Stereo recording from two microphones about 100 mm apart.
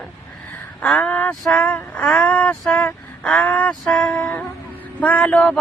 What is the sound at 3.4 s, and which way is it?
Female singing, 10° left (ahead or behind).